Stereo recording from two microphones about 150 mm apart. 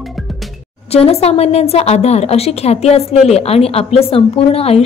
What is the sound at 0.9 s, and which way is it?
A woman's voice, 45° left (ahead or behind).